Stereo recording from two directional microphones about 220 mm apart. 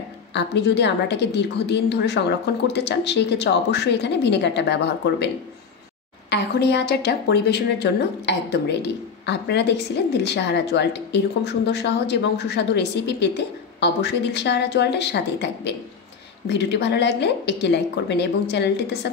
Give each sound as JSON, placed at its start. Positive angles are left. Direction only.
{"t": 0.3, "sound": "a woman's voice", "side_deg": 50}
{"t": 6.3, "sound": "a woman's voice", "side_deg": 50}
{"t": 16.4, "sound": "a woman's voice", "side_deg": 50}